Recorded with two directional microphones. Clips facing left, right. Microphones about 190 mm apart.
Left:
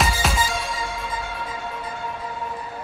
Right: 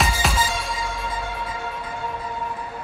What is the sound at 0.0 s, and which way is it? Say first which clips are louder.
Music: even; centre (ahead or behind).